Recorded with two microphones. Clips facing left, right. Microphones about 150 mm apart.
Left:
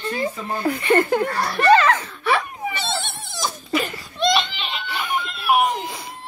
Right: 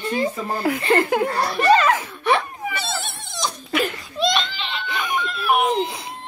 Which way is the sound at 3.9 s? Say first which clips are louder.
Left 1 dB; centre (ahead or behind).